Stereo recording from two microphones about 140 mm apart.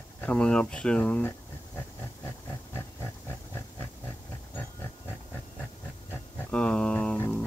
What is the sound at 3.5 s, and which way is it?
Pig, 15° left (ahead or behind).